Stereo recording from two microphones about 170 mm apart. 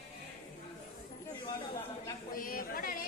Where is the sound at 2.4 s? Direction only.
55° left (ahead or behind).